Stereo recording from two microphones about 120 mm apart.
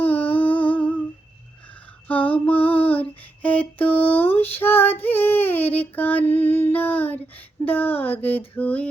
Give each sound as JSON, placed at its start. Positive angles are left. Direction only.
{"t": 0.0, "sound": "humming", "side_deg": 15}
{"t": 2.0, "sound": "female singing", "side_deg": 15}
{"t": 6.7, "sound": "a sound", "side_deg": 15}